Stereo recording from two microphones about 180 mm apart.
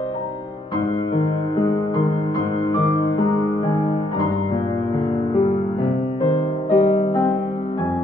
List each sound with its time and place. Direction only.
6.2 s music: 30° left (ahead or behind)